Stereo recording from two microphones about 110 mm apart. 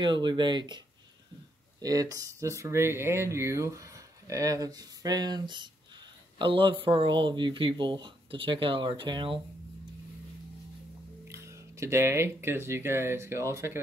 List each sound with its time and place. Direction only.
0.0 s speech: 45° right (ahead or behind)
11.2 s speech: 25° right (ahead or behind)